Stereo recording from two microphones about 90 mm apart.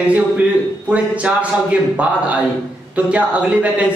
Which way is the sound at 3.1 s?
15° right (ahead or behind).